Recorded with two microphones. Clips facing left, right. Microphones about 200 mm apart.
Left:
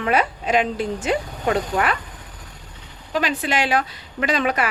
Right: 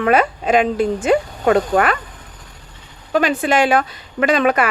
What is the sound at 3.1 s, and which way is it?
A woman's voice, 50° right (ahead or behind).